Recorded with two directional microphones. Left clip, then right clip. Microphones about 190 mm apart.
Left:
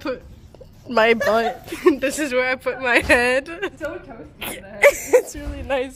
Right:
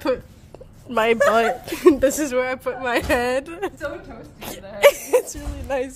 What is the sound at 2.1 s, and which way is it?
Speech, 5° right (ahead or behind).